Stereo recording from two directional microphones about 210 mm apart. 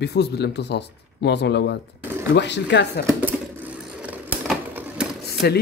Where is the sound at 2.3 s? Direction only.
55° left (ahead or behind).